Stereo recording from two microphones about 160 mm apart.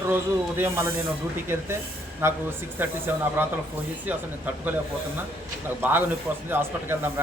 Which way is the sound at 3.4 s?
10° right (ahead or behind).